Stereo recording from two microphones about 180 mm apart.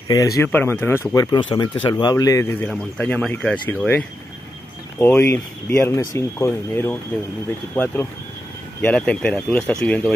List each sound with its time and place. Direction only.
0.1 s speech: 20° left (ahead or behind)